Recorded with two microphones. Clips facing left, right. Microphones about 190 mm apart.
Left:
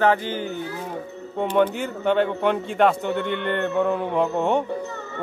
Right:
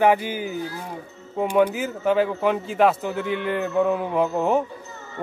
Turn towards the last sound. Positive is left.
turn(degrees=0)  # may be behind; listen again after turning